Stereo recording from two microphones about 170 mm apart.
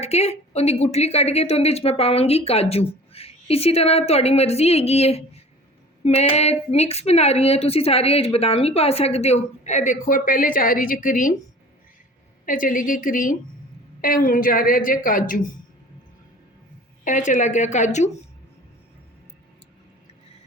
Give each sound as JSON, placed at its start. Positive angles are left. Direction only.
{"t": 0.0, "sound": "a woman's voice", "side_deg": 40}
{"t": 12.5, "sound": "a woman's voice", "side_deg": 50}
{"t": 17.0, "sound": "a woman's voice", "side_deg": 50}